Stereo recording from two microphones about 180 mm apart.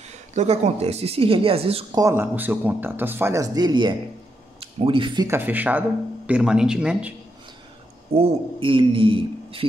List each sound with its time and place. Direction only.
0.1 s speech: 40° right (ahead or behind)
2.0 s speech: 15° right (ahead or behind)
5.3 s speech: 10° right (ahead or behind)
8.1 s speech: 30° right (ahead or behind)